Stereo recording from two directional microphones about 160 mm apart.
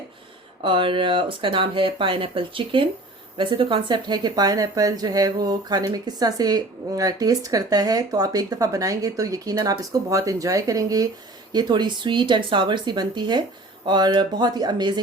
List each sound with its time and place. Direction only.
0.6 s a woman's voice: 30° right (ahead or behind)